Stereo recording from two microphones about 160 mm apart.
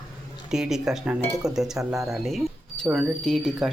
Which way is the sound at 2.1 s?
Centre (ahead or behind).